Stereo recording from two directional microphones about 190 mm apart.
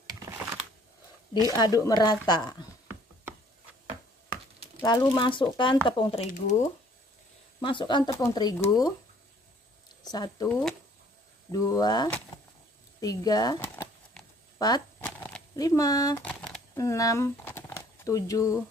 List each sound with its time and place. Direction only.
0.2 s computer keyboard: 15° right (ahead or behind)
1.5 s speech: 20° left (ahead or behind)
4.8 s speech: 25° left (ahead or behind)
7.6 s speech: 25° left (ahead or behind)
10.1 s speech: 20° left (ahead or behind)
11.5 s speech: 20° left (ahead or behind)
14.6 s shuffling cards: 20° left (ahead or behind)
15.0 s shuffling cards: 5° left (ahead or behind)
15.5 s speech: 20° left (ahead or behind)
16.3 s a sound: 5° left (ahead or behind)
16.7 s speech: 15° left (ahead or behind)